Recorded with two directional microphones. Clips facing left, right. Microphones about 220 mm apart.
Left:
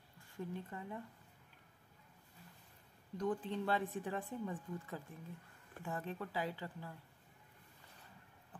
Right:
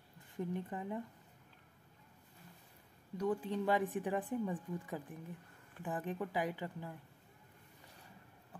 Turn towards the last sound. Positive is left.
turn(degrees=-15)  # may be behind; listen again after turning